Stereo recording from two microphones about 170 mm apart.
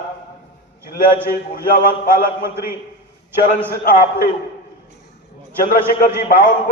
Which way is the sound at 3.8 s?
55° left (ahead or behind).